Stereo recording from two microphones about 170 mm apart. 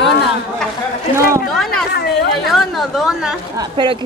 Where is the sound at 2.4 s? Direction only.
Centre (ahead or behind).